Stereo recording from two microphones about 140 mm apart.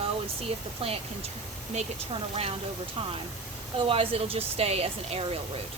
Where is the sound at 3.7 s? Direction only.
40° right (ahead or behind).